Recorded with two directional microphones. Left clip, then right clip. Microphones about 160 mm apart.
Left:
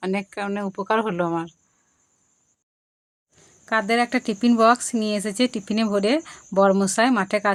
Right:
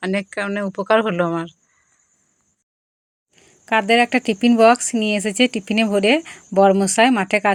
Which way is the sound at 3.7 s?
15° right (ahead or behind).